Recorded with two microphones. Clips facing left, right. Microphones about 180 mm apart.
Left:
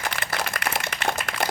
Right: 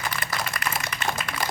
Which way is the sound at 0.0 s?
70° left (ahead or behind).